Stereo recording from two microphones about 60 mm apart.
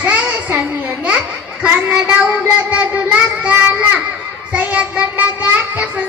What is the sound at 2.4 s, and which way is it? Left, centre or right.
Child singing, right.